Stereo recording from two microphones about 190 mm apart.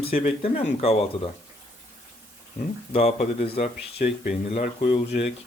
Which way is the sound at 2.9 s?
30° left (ahead or behind).